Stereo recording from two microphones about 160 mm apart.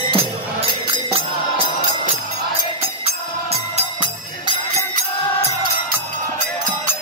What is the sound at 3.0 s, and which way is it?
Music, 40° right (ahead or behind).